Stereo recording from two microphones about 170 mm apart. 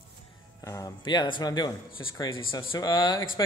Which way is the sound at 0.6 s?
20° left (ahead or behind).